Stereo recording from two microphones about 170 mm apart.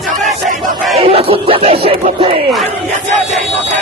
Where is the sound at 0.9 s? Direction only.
35° right (ahead or behind).